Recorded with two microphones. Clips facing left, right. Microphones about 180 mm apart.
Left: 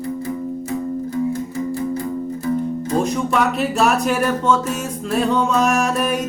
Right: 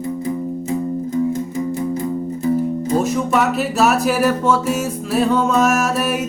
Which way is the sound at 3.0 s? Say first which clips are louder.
Right 1 dB; 5° right (ahead or behind).